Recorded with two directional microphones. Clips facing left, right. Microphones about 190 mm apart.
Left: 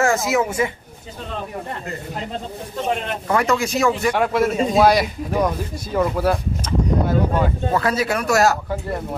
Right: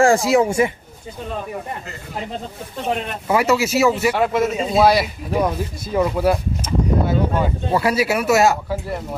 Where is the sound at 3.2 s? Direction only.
5° right (ahead or behind).